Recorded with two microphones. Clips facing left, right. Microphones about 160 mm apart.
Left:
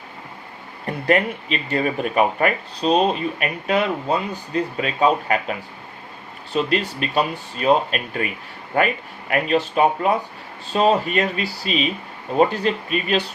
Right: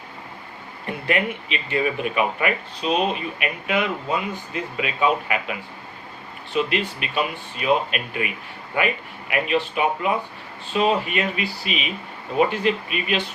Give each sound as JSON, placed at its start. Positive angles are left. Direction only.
{"t": 1.0, "sound": "a man's voice", "side_deg": 40}